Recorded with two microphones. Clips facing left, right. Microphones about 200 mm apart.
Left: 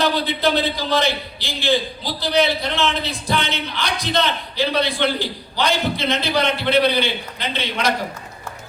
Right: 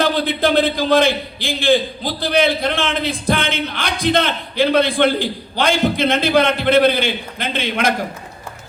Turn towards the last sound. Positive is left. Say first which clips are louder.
# right 4 dB
turn(degrees=-50)  # may be behind; listen again after turning